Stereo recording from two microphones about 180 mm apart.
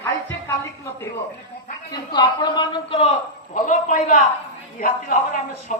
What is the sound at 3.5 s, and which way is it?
Speech, 45° left (ahead or behind).